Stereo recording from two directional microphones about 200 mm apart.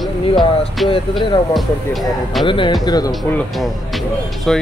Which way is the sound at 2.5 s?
25° left (ahead or behind).